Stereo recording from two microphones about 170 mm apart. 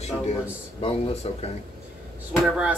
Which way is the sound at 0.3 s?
35° left (ahead or behind).